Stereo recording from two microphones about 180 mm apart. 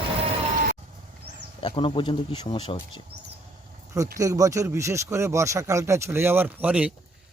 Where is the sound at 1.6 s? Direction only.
30° left (ahead or behind).